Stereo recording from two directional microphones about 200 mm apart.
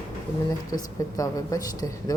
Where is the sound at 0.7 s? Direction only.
15° left (ahead or behind).